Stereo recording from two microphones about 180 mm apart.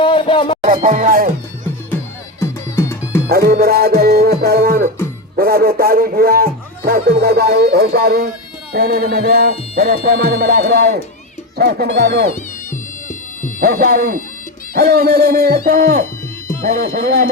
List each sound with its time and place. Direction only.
0.0 s a sound: 30° left (ahead or behind)
0.6 s speech: 50° right (ahead or behind)
2.4 s music: 15° left (ahead or behind)
3.2 s speech: 60° right (ahead or behind)
12.7 s bagpipes: 45° left (ahead or behind)
13.6 s speech: 60° right (ahead or behind)